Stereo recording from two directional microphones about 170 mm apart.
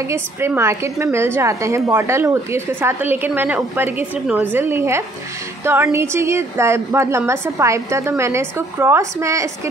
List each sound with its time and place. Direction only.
0.1 s a woman's voice: 15° right (ahead or behind)